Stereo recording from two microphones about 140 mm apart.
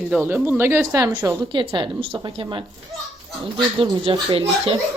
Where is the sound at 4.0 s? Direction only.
40° right (ahead or behind).